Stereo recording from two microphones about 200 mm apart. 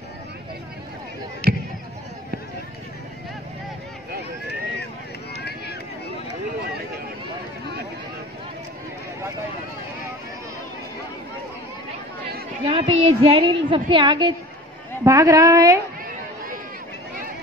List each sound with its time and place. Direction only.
1.4 s basketball bounce: 5° left (ahead or behind)
12.6 s a woman's voice: 30° right (ahead or behind)